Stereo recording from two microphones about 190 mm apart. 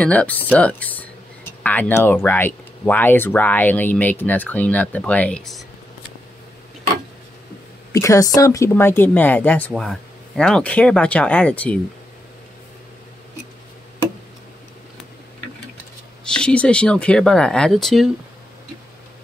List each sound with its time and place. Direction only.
0.0 s speech: 5° left (ahead or behind)
7.9 s speech: 15° left (ahead or behind)
16.3 s speech: 5° left (ahead or behind)